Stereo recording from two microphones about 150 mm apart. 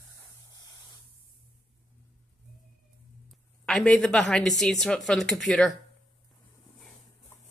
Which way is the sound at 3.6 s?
5° left (ahead or behind).